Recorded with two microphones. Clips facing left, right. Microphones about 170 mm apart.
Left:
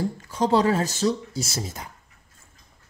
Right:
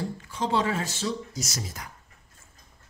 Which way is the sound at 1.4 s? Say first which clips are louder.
Left 4 dB; 30° left (ahead or behind).